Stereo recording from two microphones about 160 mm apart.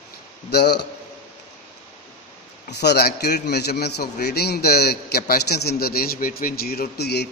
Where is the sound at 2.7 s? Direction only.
90° left.